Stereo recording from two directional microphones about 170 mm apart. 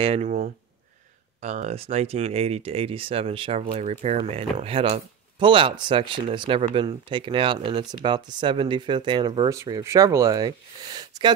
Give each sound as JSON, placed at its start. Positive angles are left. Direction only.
{"t": 0.0, "sound": "speech", "side_deg": -35}
{"t": 1.4, "sound": "speech", "side_deg": -45}